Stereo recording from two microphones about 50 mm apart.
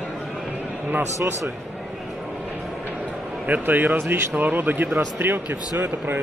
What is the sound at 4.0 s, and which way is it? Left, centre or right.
Speech, right.